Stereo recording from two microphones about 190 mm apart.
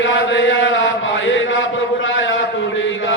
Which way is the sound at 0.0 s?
70° left (ahead or behind).